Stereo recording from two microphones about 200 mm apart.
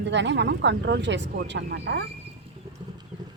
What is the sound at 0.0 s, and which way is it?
Speech, 60° right (ahead or behind).